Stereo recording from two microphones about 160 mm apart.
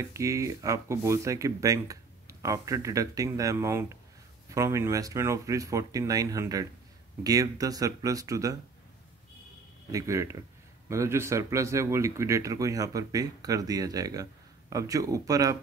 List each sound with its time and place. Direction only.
0.0 s speech: 20° right (ahead or behind)
9.8 s speech: 20° right (ahead or behind)